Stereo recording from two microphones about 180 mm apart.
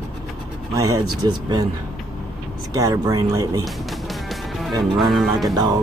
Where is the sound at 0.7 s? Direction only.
25° right (ahead or behind).